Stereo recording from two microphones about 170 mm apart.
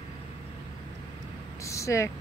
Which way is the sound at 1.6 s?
20° left (ahead or behind).